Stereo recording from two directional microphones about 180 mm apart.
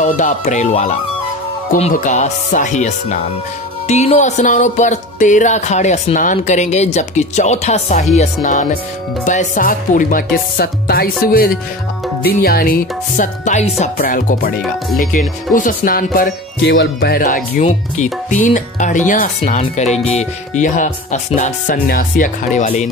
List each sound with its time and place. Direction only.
0.0 s music: 40° left (ahead or behind)
9.2 s speech: 45° left (ahead or behind)
14.0 s speech: 50° left (ahead or behind)
16.7 s speech: 70° left (ahead or behind)
17.2 s speech: 45° left (ahead or behind)